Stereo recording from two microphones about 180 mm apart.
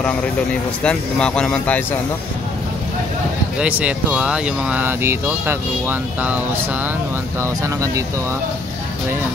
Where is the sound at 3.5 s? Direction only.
10° right (ahead or behind).